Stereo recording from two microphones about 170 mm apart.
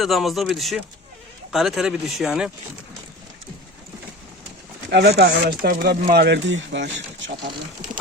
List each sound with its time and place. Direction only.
0.0 s speech: centre (ahead or behind)
4.9 s speech: 80° right